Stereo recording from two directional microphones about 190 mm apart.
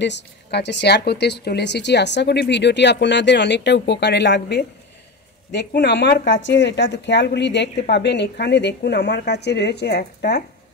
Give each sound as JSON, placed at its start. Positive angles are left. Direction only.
{"t": 0.0, "sound": "speech", "side_deg": 65}